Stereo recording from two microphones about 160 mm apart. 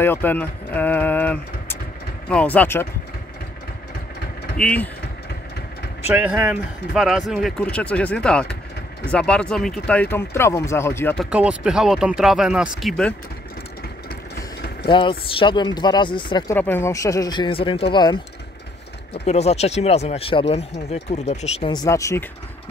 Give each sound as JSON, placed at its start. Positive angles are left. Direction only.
{"t": 0.0, "sound": "speech", "side_deg": 15}
{"t": 4.6, "sound": "speech", "side_deg": 5}
{"t": 6.0, "sound": "speech", "side_deg": -10}
{"t": 11.1, "sound": "speech", "side_deg": -5}
{"t": 14.9, "sound": "speech", "side_deg": 30}
{"t": 16.5, "sound": "speech", "side_deg": 15}
{"t": 19.2, "sound": "speech", "side_deg": 45}
{"t": 21.6, "sound": "speech", "side_deg": 25}